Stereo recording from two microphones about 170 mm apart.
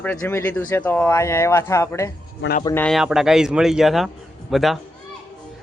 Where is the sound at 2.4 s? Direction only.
90° left.